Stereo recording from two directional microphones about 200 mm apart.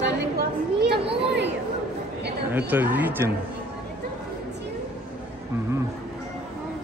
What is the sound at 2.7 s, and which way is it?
Speech, 10° right (ahead or behind).